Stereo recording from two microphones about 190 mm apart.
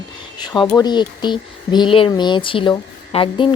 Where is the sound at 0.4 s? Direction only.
25° left (ahead or behind).